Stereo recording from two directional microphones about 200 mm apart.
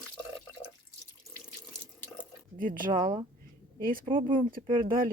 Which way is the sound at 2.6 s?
45° right (ahead or behind).